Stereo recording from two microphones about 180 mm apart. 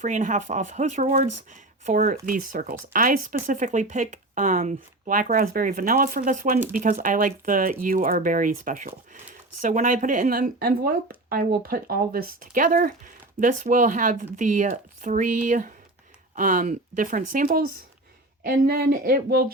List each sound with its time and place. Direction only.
0.0 s speech: 45° right (ahead or behind)